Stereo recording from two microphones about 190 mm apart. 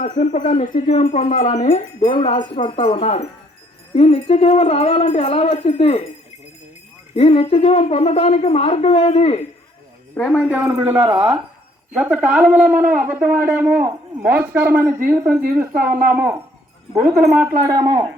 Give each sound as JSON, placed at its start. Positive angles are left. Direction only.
{"t": 0.0, "sound": "speech", "side_deg": 40}
{"t": 7.2, "sound": "speech", "side_deg": 30}
{"t": 10.3, "sound": "speech", "side_deg": -5}
{"t": 11.0, "sound": "speech", "side_deg": -20}
{"t": 11.9, "sound": "speech", "side_deg": -10}
{"t": 17.6, "sound": "speech", "side_deg": -15}